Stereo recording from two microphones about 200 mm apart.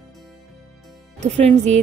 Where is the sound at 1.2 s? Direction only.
35° right (ahead or behind).